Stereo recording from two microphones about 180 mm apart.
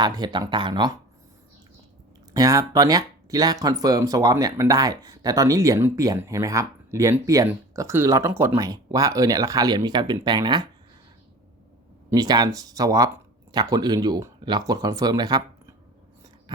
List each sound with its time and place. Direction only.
0.0 s speech: 25° right (ahead or behind)
2.3 s speech: 20° right (ahead or behind)
12.1 s speech: 20° right (ahead or behind)